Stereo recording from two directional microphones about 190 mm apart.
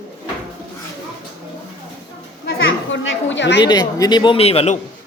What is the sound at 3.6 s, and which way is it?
A man's voice, 20° left (ahead or behind).